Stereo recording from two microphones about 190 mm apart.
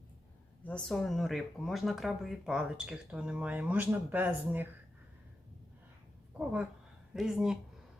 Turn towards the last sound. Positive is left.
turn(degrees=-5)  # may be behind; listen again after turning